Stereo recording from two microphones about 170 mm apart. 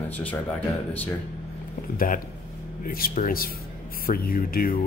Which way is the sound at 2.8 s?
55° left (ahead or behind).